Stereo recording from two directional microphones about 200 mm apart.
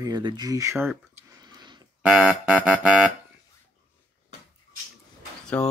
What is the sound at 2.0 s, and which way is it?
Speech, 5° right (ahead or behind).